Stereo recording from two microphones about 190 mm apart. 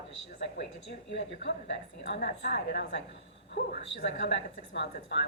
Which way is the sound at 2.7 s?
60° left (ahead or behind).